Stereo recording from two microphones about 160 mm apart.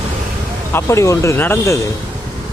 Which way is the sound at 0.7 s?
15° left (ahead or behind).